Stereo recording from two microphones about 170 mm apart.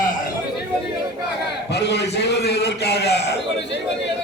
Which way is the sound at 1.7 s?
80° left.